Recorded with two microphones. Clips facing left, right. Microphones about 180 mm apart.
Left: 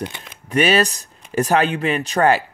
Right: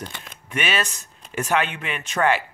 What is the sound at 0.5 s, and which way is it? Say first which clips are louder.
Speech: left 9 dB; 35° left (ahead or behind).